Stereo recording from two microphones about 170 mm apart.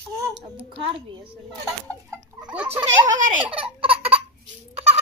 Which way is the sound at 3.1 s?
50° right (ahead or behind).